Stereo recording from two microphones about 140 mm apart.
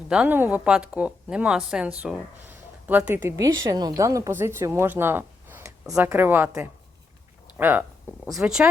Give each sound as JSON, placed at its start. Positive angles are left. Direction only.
{"t": 0.1, "sound": "a woman's voice", "side_deg": -10}
{"t": 5.8, "sound": "speech", "side_deg": -5}
{"t": 6.1, "sound": "speech", "side_deg": -15}
{"t": 8.3, "sound": "speech", "side_deg": -5}